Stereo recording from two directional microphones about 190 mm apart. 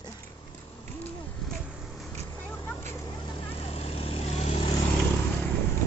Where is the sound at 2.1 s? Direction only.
10° left (ahead or behind); by 4.7 s 35° left (ahead or behind).